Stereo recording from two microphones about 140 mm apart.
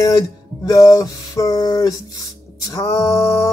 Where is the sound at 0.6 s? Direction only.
25° left (ahead or behind).